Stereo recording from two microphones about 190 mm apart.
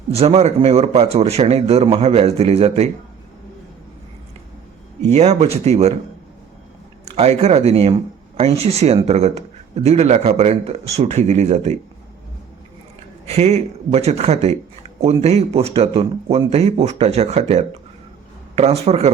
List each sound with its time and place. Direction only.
0.1 s speech: 30° right (ahead or behind)
5.0 s speech: 35° right (ahead or behind)
7.0 s speech: 35° right (ahead or behind)
13.2 s speech: 35° right (ahead or behind)